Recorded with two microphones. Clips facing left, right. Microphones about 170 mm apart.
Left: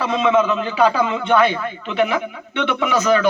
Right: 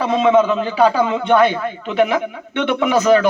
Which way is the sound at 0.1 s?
40° right (ahead or behind).